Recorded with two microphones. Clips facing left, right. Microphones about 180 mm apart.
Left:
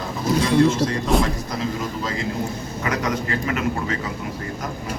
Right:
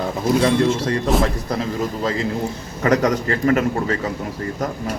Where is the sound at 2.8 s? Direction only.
40° right (ahead or behind).